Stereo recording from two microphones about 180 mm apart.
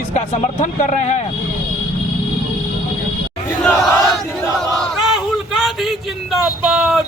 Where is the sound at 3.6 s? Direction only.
5° left (ahead or behind).